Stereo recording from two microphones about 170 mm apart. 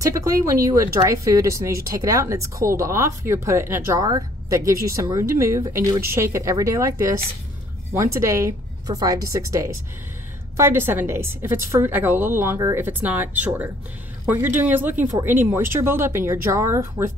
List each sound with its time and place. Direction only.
0.0 s speech: 20° right (ahead or behind)